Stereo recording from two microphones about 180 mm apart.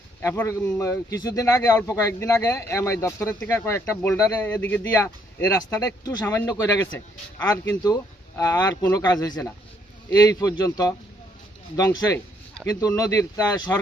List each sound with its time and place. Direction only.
0.2 s a man's voice: 15° left (ahead or behind)
12.6 s speech: 5° left (ahead or behind)
13.0 s a man's voice: 15° left (ahead or behind)